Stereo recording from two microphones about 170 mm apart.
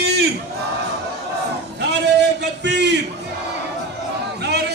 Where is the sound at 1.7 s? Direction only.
85° right.